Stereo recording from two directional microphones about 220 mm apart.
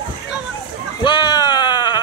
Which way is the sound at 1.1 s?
20° left (ahead or behind).